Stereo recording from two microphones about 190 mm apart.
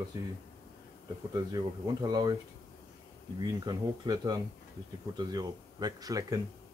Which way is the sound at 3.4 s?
20° right (ahead or behind).